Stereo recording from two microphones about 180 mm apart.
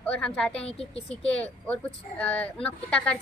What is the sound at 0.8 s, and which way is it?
Speech, 35° left (ahead or behind).